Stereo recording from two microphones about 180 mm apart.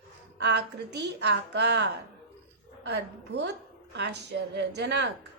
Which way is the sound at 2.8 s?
70° right (ahead or behind).